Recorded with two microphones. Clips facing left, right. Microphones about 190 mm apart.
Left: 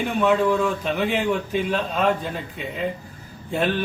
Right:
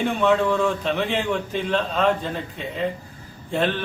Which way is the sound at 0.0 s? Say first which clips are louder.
Even; centre (ahead or behind).